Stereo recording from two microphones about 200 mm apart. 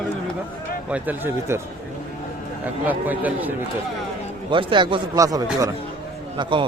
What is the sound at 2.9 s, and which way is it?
Speech, 10° right (ahead or behind).